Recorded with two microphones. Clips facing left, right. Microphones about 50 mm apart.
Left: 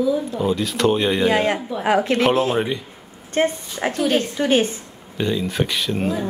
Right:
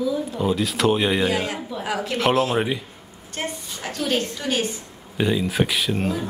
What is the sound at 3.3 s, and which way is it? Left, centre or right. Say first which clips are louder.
A woman's voice: left 10 dB; left.